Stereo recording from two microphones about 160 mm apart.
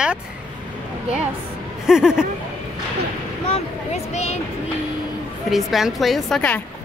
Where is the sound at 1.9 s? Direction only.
5° right (ahead or behind).